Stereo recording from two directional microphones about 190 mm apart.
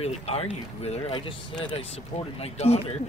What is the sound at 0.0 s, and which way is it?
Speech, 30° left (ahead or behind).